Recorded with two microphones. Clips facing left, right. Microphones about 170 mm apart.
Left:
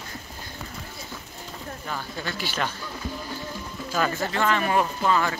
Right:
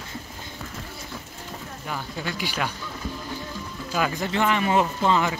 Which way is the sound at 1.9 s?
15° right (ahead or behind).